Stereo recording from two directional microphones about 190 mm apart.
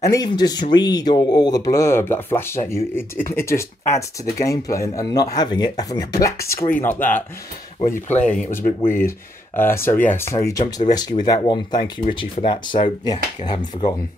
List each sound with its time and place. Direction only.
0.0 s speech: 20° left (ahead or behind)
8.4 s speech: 10° left (ahead or behind)